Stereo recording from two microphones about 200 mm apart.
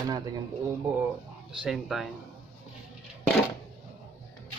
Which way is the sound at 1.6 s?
Centre (ahead or behind).